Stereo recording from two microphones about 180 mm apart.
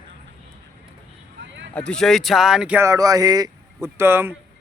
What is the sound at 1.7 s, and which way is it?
Speech, 5° left (ahead or behind).